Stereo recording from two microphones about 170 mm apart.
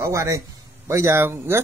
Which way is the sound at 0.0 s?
20° right (ahead or behind).